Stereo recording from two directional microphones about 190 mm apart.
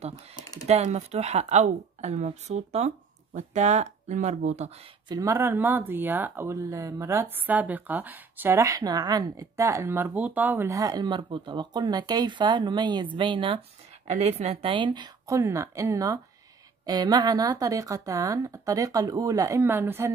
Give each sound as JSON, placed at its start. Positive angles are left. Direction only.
{"t": 0.1, "sound": "speech", "side_deg": 20}
{"t": 0.7, "sound": "speech", "side_deg": -35}
{"t": 5.0, "sound": "speech", "side_deg": -20}